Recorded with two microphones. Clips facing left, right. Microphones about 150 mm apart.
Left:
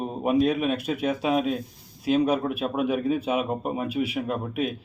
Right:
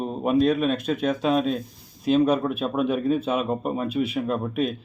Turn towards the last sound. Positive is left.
turn(degrees=10)  # may be behind; listen again after turning